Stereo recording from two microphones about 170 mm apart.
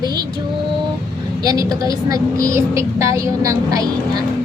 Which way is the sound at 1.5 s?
20° right (ahead or behind).